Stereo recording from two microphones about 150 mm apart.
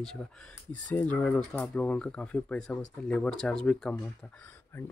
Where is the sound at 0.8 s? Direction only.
10° left (ahead or behind).